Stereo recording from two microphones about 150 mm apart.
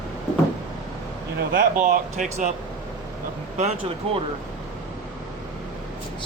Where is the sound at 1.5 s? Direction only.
60° right (ahead or behind).